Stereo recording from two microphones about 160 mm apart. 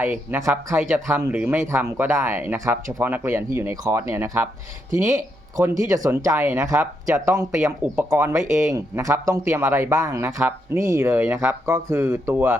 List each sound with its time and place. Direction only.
0.0 s speech: 15° right (ahead or behind)